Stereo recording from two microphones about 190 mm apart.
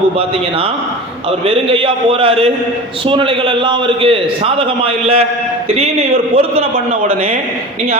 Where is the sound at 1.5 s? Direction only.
30° right (ahead or behind).